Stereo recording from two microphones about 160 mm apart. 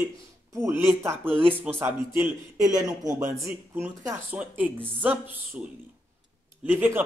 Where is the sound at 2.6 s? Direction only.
20° right (ahead or behind).